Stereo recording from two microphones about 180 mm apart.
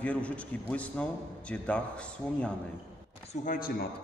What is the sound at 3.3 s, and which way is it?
Speech, 45° left (ahead or behind).